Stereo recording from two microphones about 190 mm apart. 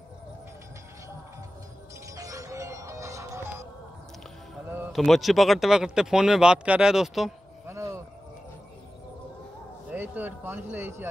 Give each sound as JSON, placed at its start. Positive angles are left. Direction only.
{"t": 2.0, "sound": "music", "side_deg": -15}
{"t": 4.9, "sound": "speech", "side_deg": 0}
{"t": 7.6, "sound": "a sound", "side_deg": -15}
{"t": 9.8, "sound": "speech", "side_deg": -10}